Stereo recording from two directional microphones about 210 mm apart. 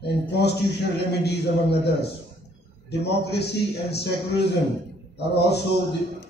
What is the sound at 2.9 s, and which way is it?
Speech, 50° left (ahead or behind).